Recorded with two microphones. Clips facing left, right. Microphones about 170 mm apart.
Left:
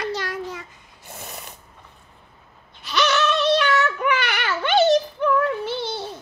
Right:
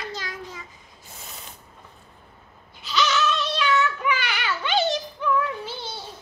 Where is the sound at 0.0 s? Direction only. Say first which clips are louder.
Left 7 dB; 70° left (ahead or behind).